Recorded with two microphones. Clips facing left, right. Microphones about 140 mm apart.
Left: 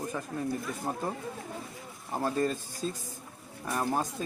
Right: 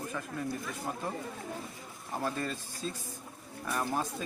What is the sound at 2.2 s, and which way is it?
Speech, 40° left (ahead or behind).